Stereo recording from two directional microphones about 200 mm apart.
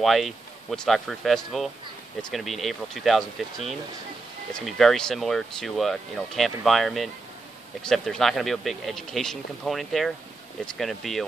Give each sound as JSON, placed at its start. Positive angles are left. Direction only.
{"t": 0.0, "sound": "speech", "side_deg": 0}